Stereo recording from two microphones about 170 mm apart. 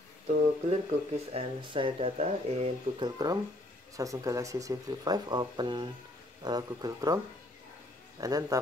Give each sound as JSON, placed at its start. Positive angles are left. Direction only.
{"t": 0.3, "sound": "speech", "side_deg": -40}
{"t": 3.0, "sound": "speech", "side_deg": -25}
{"t": 8.2, "sound": "speech", "side_deg": -20}